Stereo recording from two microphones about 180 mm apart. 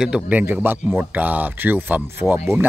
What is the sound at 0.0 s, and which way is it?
A man's voice, 5° right (ahead or behind).